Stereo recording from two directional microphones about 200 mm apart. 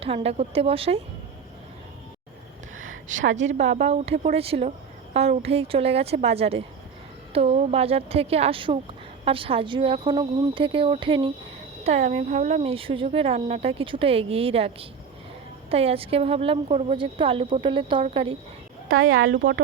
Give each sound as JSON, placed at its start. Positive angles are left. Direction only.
{"t": 0.0, "sound": "speech", "side_deg": -30}
{"t": 3.3, "sound": "a woman's voice", "side_deg": -35}
{"t": 18.9, "sound": "speech", "side_deg": -90}